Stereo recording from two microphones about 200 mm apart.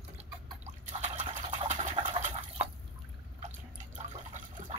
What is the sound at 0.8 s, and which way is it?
Liquid, 35° right (ahead or behind).